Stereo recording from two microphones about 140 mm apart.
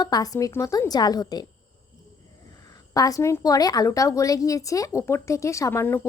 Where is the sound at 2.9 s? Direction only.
25° left (ahead or behind).